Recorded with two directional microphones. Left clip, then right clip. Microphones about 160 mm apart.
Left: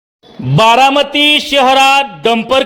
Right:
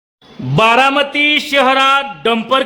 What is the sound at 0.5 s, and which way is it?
A man's voice, 20° left (ahead or behind).